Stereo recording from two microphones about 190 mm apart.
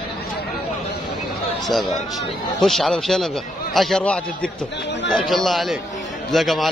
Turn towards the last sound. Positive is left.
turn(degrees=0)  # may be behind; listen again after turning